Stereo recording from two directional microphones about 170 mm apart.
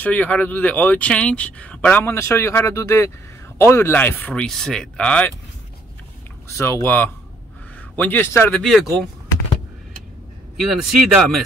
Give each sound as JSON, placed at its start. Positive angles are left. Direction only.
{"t": 0.0, "sound": "speech", "side_deg": 10}
{"t": 6.5, "sound": "speech", "side_deg": 15}
{"t": 8.5, "sound": "speech", "side_deg": 5}
{"t": 10.7, "sound": "speech", "side_deg": 0}